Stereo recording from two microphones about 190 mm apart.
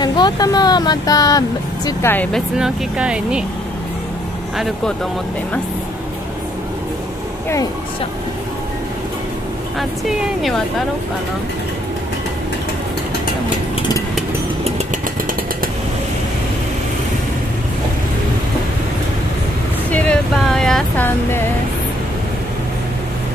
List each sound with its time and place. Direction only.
0.0 s speech: 20° left (ahead or behind)
2.3 s speech: 5° right (ahead or behind)
4.6 s speech: centre (ahead or behind)
9.8 s speech: centre (ahead or behind)
19.9 s speech: 5° left (ahead or behind)